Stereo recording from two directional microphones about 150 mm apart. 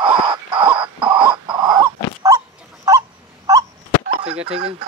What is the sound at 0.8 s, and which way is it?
Dog, 35° right (ahead or behind).